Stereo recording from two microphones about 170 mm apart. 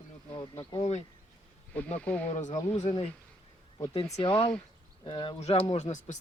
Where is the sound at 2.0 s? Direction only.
10° left (ahead or behind).